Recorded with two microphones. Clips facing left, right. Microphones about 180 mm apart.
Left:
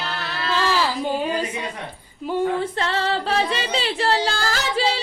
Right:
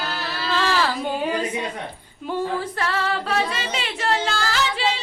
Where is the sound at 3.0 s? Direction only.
30° left (ahead or behind).